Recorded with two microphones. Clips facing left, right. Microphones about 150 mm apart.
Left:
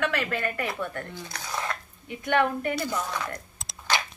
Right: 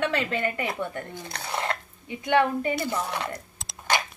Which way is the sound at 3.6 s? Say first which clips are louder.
Right 1 dB; centre (ahead or behind).